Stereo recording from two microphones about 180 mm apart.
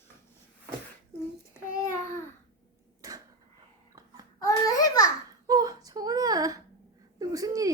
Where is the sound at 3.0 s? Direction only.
20° right (ahead or behind).